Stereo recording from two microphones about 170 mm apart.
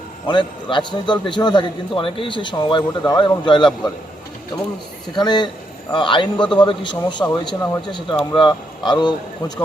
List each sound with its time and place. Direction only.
0.3 s a man's voice: 25° left (ahead or behind)
5.1 s a man's voice: 25° left (ahead or behind)